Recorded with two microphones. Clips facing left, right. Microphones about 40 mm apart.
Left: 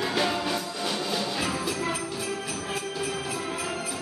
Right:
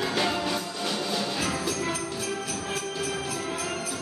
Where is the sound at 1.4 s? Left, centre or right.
Centre.